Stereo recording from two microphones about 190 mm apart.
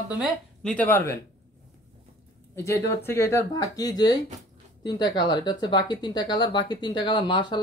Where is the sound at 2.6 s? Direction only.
15° left (ahead or behind).